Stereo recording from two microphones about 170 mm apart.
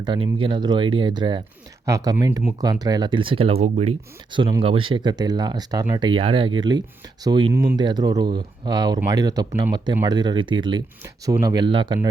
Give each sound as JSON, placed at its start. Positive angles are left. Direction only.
{"t": 0.0, "sound": "speech", "side_deg": -30}